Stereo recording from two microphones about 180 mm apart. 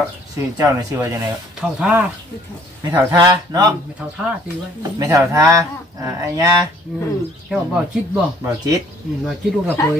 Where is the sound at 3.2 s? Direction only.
25° right (ahead or behind).